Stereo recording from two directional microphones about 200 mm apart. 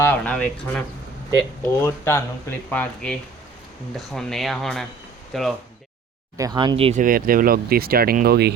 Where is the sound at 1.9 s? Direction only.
15° left (ahead or behind).